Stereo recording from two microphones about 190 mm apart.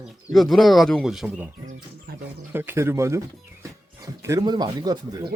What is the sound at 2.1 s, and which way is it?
Speech, 55° right (ahead or behind).